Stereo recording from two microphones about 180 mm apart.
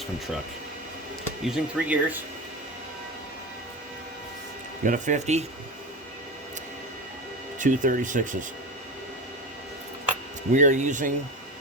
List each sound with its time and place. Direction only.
1.5 s speech: 5° right (ahead or behind)
4.8 s speech: 45° right (ahead or behind)
7.6 s speech: 50° right (ahead or behind)
10.5 s speech: 40° right (ahead or behind)